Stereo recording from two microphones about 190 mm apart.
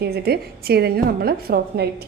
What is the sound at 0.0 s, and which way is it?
A woman's voice, 55° right (ahead or behind).